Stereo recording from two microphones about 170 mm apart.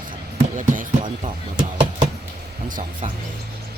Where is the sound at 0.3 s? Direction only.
50° right (ahead or behind).